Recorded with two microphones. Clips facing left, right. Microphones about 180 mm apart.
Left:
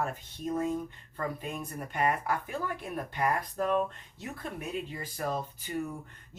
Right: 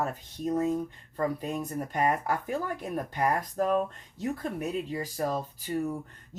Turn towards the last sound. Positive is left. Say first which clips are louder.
# right 6 dB
turn(degrees=-35)  # may be behind; listen again after turning